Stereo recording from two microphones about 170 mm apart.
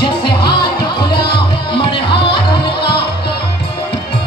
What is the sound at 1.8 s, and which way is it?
Music, 30° left (ahead or behind).